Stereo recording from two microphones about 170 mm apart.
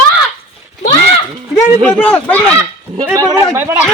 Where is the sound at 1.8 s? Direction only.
10° left (ahead or behind).